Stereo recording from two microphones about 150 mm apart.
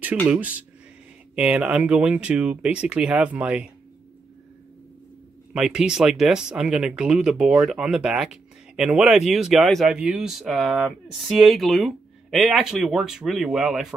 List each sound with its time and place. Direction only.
0.3 s speech: 10° right (ahead or behind)
5.5 s speech: 5° right (ahead or behind)